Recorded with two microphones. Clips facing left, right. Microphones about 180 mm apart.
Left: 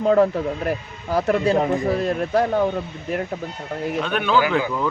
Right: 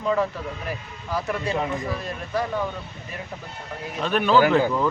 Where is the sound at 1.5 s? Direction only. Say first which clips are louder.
Left 7 dB; 45° left (ahead or behind).